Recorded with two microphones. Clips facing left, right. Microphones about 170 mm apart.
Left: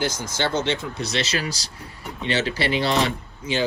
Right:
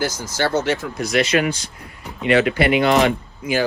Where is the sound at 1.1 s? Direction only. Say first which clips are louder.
Right 10 dB; 35° left (ahead or behind).